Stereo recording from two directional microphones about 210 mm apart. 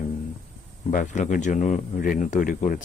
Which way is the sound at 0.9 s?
35° left (ahead or behind).